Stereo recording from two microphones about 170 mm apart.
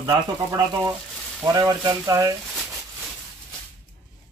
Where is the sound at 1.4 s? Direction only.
20° right (ahead or behind).